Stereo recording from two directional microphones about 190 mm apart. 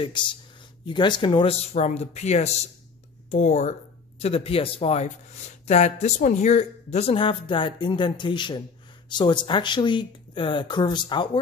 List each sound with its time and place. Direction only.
0.0 s speech: 25° left (ahead or behind)